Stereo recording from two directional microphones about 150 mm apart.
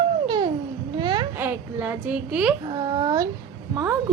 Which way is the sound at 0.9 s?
30° right (ahead or behind).